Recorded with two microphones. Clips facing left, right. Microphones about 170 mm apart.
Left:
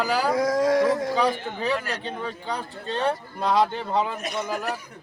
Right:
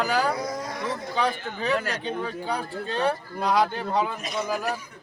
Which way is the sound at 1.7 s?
30° left (ahead or behind).